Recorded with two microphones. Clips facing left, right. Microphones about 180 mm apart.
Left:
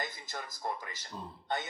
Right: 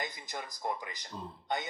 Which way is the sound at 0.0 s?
15° right (ahead or behind).